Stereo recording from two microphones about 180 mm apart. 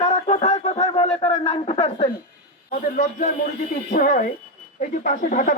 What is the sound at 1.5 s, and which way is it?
Speech, 35° left (ahead or behind).